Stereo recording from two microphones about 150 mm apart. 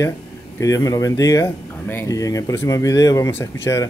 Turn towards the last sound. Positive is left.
turn(degrees=15)  # may be behind; listen again after turning